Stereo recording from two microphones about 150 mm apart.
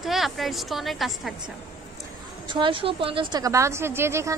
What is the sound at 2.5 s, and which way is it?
A woman's voice, 35° right (ahead or behind).